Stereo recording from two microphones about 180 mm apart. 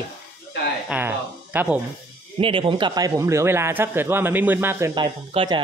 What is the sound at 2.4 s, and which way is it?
Speech, 30° right (ahead or behind).